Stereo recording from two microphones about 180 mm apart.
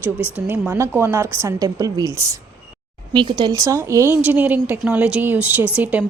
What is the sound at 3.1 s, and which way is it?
Speech, 25° right (ahead or behind).